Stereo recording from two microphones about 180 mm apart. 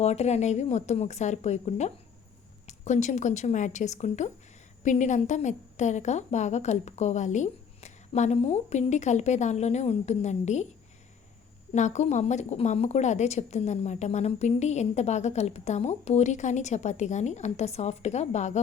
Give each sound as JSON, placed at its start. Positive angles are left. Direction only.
{"t": 0.0, "sound": "speech", "side_deg": 40}
{"t": 11.7, "sound": "speech", "side_deg": 40}